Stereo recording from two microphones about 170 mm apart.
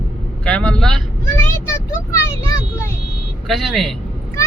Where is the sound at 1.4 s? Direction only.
15° left (ahead or behind).